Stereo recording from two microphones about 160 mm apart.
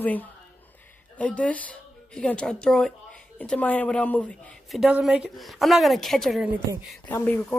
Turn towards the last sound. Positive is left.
turn(degrees=10)  # may be behind; listen again after turning